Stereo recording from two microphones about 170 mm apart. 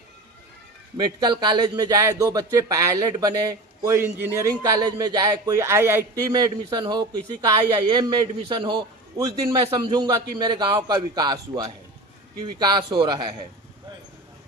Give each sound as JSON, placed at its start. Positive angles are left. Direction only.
{"t": 0.9, "sound": "speech", "side_deg": -25}